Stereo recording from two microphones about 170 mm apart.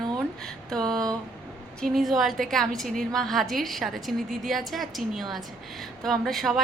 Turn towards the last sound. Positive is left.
turn(degrees=0)  # may be behind; listen again after turning